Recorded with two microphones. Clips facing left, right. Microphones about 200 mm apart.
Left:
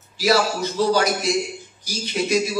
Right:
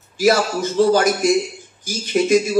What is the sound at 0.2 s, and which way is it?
Speech, 50° right (ahead or behind).